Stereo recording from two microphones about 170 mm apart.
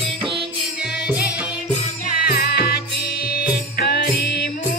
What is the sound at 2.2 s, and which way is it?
Music, 70° left (ahead or behind).